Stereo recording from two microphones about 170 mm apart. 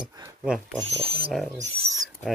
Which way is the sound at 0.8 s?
35° right (ahead or behind).